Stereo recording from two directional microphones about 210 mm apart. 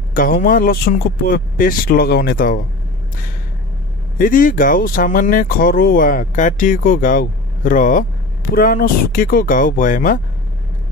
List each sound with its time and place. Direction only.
0.1 s speech: 40° left (ahead or behind)
4.2 s speech: 40° left (ahead or behind)